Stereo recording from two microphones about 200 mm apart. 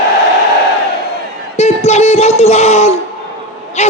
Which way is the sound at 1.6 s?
35° left (ahead or behind).